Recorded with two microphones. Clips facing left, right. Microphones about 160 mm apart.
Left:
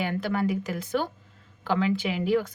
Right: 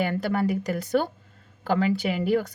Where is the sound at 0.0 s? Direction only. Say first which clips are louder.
Right 2 dB; 45° right (ahead or behind).